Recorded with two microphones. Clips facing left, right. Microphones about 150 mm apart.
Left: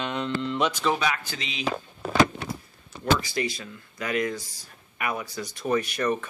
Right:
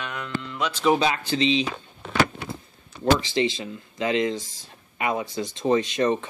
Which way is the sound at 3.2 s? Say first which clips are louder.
Right 5 dB; 25° right (ahead or behind).